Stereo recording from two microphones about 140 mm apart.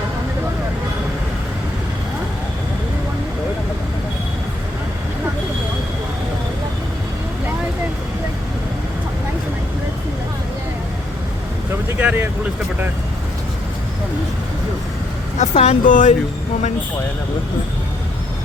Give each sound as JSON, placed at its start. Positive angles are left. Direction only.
{"t": 11.9, "sound": "vehicle", "side_deg": -15}
{"t": 15.4, "sound": "speech", "side_deg": 55}